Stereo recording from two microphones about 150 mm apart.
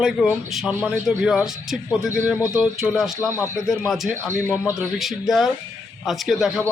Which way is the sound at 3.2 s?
20° left (ahead or behind).